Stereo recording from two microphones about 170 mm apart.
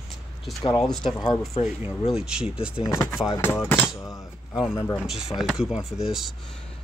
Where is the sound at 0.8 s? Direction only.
Centre (ahead or behind).